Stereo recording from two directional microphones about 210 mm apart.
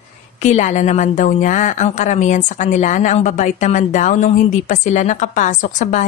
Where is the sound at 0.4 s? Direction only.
35° left (ahead or behind).